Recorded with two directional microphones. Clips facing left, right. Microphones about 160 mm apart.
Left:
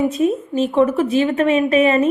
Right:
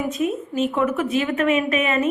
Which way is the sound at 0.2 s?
30° left (ahead or behind).